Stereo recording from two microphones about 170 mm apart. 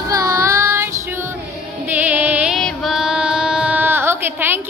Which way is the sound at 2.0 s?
10° right (ahead or behind).